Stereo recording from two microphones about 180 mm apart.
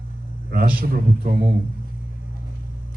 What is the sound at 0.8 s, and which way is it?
Speech, 50° right (ahead or behind).